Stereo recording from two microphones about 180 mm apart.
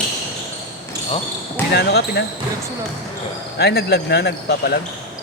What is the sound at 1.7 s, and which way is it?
Speech, 65° left (ahead or behind).